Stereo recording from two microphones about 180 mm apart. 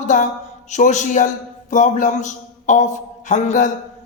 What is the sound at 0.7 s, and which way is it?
A man's voice, 40° left (ahead or behind).